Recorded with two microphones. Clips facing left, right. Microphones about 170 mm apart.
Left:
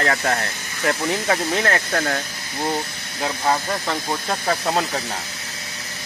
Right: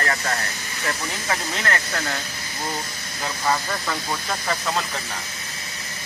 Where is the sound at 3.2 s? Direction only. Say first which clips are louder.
Left 3 dB; 30° left (ahead or behind).